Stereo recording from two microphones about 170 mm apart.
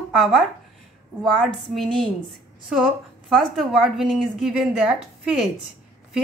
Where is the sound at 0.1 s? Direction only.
Centre (ahead or behind).